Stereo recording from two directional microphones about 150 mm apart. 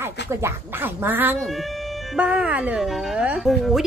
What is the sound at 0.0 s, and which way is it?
Speech, 15° right (ahead or behind).